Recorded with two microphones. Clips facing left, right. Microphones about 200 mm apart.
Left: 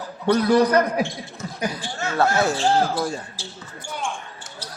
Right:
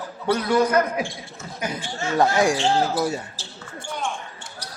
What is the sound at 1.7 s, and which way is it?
Speech, 15° right (ahead or behind).